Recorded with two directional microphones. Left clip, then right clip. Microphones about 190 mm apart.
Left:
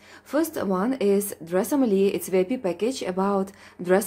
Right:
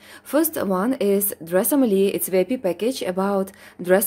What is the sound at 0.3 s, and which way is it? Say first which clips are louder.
Speech: right 4 dB; 25° right (ahead or behind).